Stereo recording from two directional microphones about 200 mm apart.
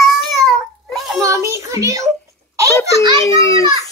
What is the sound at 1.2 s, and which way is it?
Child singing, 15° right (ahead or behind).